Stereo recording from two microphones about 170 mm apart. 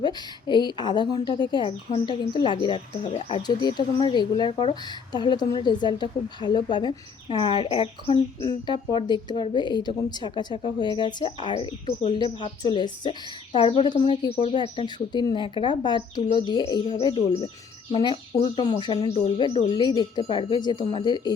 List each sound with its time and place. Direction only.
0.0 s speech: 25° left (ahead or behind)